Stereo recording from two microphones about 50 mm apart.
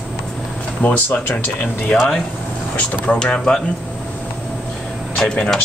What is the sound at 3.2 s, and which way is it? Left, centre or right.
Speech, centre.